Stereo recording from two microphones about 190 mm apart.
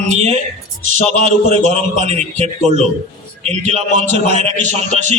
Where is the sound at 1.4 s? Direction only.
35° right (ahead or behind).